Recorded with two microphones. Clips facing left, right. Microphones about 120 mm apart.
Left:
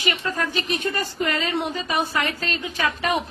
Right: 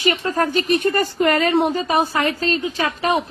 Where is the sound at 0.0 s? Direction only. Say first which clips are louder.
Right 6 dB; 40° right (ahead or behind); by 1.5 s 55° right (ahead or behind).